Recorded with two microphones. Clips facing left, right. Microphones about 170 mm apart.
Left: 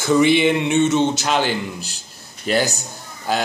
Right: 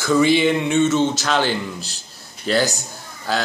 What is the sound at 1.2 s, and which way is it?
A man's voice, 15° left (ahead or behind).